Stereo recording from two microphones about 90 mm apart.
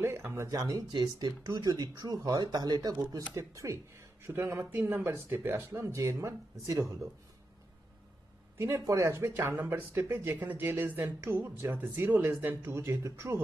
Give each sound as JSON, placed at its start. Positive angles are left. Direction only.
{"t": 0.0, "sound": "speech", "side_deg": -25}
{"t": 0.5, "sound": "speech", "side_deg": -40}
{"t": 0.9, "sound": "speech", "side_deg": -50}
{"t": 8.5, "sound": "speech", "side_deg": -30}